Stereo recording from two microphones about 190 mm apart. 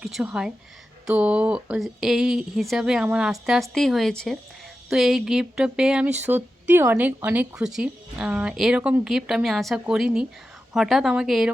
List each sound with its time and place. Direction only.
0.0 s speech: centre (ahead or behind)